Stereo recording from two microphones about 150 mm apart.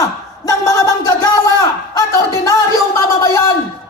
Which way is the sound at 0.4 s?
25° left (ahead or behind).